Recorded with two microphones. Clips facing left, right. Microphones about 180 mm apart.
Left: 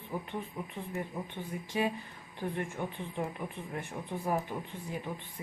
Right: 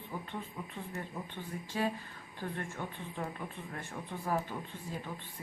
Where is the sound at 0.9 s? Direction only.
15° left (ahead or behind).